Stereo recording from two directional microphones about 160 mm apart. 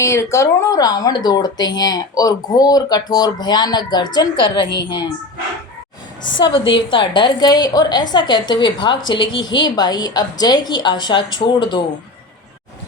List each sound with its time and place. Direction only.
0.0 s speech: 15° left (ahead or behind)
6.2 s speech: 30° left (ahead or behind)